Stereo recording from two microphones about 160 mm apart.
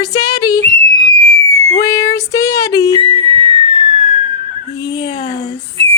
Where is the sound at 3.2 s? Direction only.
35° right (ahead or behind).